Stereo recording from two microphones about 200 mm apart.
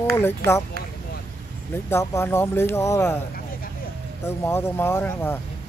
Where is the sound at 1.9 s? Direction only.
10° left (ahead or behind).